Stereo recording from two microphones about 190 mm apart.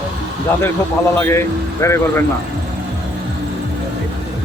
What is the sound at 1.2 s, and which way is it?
Speech, 15° left (ahead or behind).